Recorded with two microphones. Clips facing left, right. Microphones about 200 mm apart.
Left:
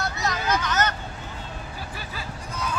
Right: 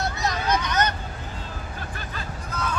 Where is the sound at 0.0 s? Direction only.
20° right (ahead or behind).